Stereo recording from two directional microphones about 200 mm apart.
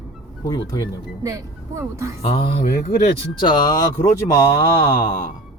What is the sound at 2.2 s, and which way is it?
Speech, 25° left (ahead or behind).